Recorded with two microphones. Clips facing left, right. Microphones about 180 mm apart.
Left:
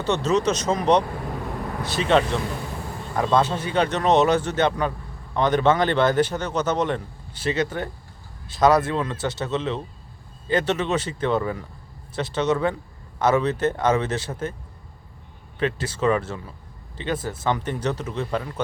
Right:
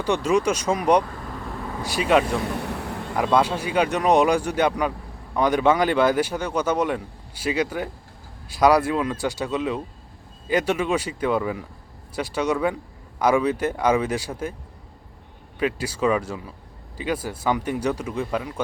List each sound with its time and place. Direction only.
0.0 s a man's voice: 10° right (ahead or behind)
2.6 s vehicle: 70° right (ahead or behind)
3.2 s a man's voice: 10° right (ahead or behind)
15.5 s a man's voice: 10° right (ahead or behind)